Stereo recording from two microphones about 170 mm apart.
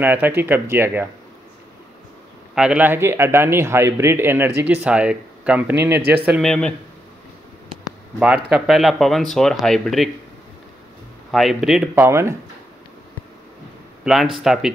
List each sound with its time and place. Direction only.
0.0 s speech: 10° right (ahead or behind)
2.5 s speech: 5° right (ahead or behind)
6.4 s speech: 5° left (ahead or behind)
8.5 s speech: centre (ahead or behind)
11.3 s speech: centre (ahead or behind)
11.9 s speech: 15° right (ahead or behind)
14.0 s speech: centre (ahead or behind)